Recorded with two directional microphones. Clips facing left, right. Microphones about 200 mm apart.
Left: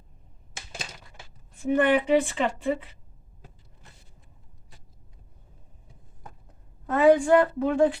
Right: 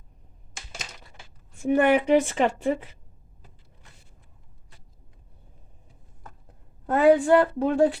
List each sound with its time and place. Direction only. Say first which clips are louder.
1.7 s speech: right 2 dB; 45° right (ahead or behind)
6.9 s a woman's voice: right 1 dB; 35° right (ahead or behind)